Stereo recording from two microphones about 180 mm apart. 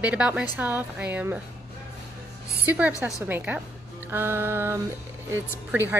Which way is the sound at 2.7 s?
10° right (ahead or behind).